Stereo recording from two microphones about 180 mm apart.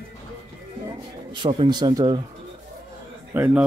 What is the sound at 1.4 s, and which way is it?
Speech, 25° right (ahead or behind).